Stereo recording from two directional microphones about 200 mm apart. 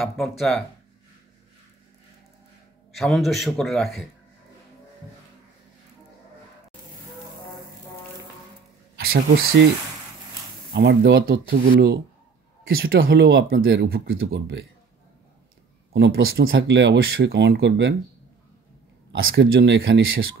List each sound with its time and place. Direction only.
0.0 s a man's voice: centre (ahead or behind)
2.9 s a man's voice: centre (ahead or behind)
9.0 s speech: 50° right (ahead or behind)
10.7 s speech: 55° right (ahead or behind)
15.9 s speech: 60° right (ahead or behind)
19.3 s speech: 65° right (ahead or behind)